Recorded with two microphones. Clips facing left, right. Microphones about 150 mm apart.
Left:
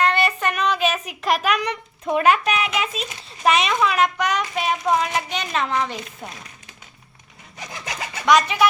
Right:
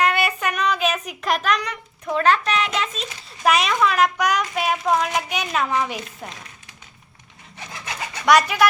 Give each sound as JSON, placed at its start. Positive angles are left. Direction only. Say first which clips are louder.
{"t": 0.0, "sound": "child singing", "louder": "left 1 dB", "side_deg": -5}
{"t": 1.4, "sound": "a child's voice", "louder": "even", "side_deg": 10}
{"t": 1.6, "sound": "a woman's voice", "louder": "left 4 dB", "side_deg": 25}
{"t": 2.2, "sound": "a child's voice", "louder": "even", "side_deg": 10}
{"t": 8.3, "sound": "a child's voice", "louder": "right 1 dB", "side_deg": -5}